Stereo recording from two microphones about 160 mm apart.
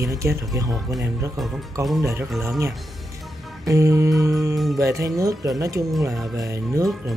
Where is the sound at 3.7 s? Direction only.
20° right (ahead or behind).